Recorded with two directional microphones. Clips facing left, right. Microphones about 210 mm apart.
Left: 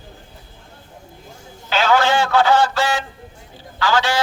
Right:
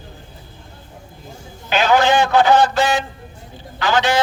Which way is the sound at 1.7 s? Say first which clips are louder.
Right 2 dB; 15° right (ahead or behind).